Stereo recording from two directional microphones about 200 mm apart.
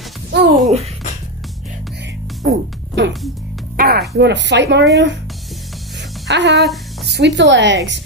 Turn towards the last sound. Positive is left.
turn(degrees=-65)  # may be behind; listen again after turning